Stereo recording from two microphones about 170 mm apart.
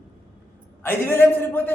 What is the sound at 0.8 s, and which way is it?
Speech, 15° left (ahead or behind).